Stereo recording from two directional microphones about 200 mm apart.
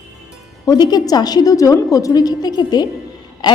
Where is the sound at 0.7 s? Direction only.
20° left (ahead or behind).